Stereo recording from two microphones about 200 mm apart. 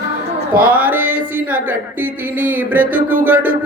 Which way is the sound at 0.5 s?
45° right (ahead or behind).